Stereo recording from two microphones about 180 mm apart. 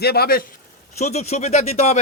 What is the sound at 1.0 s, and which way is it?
Speech, 40° left (ahead or behind).